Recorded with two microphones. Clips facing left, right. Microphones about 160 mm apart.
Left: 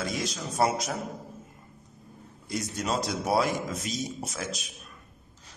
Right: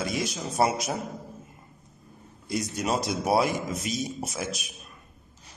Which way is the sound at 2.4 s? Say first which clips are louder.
Right 3 dB; 15° right (ahead or behind).